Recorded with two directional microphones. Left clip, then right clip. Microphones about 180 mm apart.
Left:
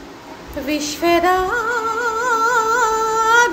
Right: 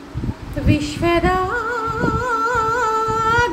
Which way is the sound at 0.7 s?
15° right (ahead or behind).